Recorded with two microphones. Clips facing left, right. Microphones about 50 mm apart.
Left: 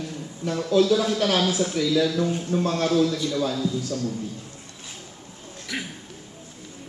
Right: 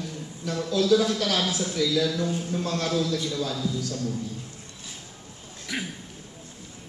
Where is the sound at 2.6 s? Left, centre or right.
Left.